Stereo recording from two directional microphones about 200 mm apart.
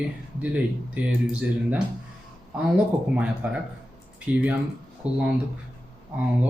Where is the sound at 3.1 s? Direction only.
5° right (ahead or behind).